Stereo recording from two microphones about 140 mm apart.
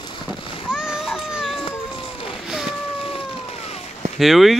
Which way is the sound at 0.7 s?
5° right (ahead or behind).